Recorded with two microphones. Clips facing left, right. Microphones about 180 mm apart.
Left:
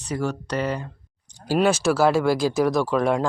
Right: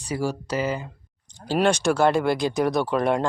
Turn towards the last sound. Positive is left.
turn(degrees=0)  # may be behind; listen again after turning